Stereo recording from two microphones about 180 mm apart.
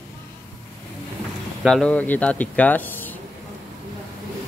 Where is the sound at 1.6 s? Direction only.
5° left (ahead or behind).